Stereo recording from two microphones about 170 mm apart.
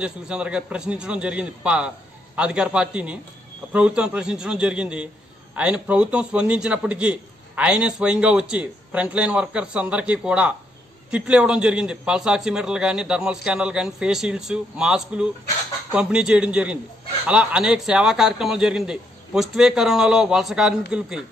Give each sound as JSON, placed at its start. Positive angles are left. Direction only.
{"t": 0.0, "sound": "a man's voice", "side_deg": -5}